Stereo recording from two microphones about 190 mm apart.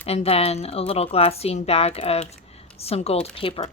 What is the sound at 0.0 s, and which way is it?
Speech, 30° left (ahead or behind).